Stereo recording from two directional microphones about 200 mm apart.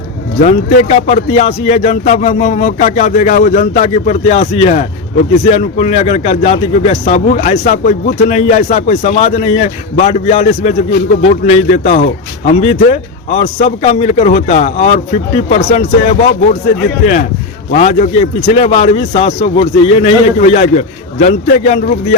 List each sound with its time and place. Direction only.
0.4 s speech: 35° left (ahead or behind)
17.7 s speech: 35° left (ahead or behind)